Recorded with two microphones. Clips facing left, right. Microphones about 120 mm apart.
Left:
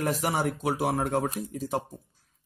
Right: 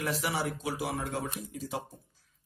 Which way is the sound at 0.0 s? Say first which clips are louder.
Left 5 dB; 45° left (ahead or behind).